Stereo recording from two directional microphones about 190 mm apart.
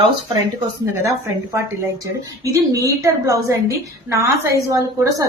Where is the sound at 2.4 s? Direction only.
15° right (ahead or behind).